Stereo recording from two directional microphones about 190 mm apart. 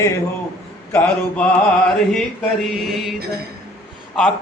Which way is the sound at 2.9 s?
Centre (ahead or behind).